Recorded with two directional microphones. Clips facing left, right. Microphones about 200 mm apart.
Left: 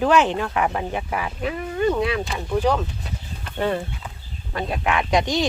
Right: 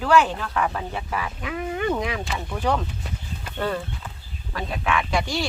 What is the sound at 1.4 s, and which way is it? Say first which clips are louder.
Speech: left 4 dB; 30° left (ahead or behind).